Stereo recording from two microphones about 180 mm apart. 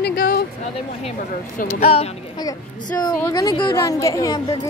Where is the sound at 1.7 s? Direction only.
35° left (ahead or behind).